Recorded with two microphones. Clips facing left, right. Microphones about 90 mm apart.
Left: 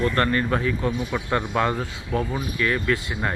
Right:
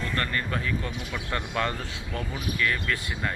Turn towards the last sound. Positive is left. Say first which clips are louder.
# left 6 dB
turn(degrees=25)  # may be behind; listen again after turning